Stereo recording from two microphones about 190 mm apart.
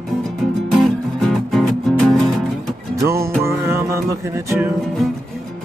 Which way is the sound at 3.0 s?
15° right (ahead or behind).